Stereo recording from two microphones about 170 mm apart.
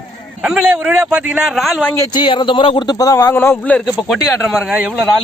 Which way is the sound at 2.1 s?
30° left (ahead or behind).